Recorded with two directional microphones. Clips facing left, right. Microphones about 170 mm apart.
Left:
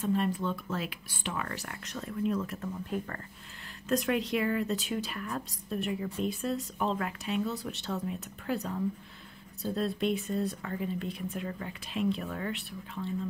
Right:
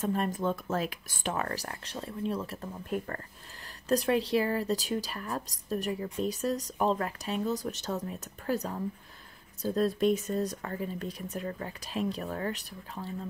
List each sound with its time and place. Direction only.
0.0 s speech: 45° right (ahead or behind)
3.9 s speech: 30° right (ahead or behind)